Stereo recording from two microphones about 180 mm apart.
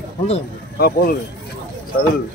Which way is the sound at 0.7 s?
60° left (ahead or behind).